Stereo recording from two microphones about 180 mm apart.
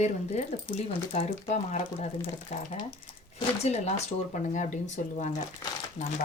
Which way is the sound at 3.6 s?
40° left (ahead or behind).